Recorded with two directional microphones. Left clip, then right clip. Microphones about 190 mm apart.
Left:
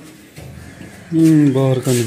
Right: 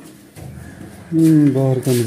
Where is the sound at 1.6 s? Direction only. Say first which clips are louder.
Left 1 dB; 5° right (ahead or behind).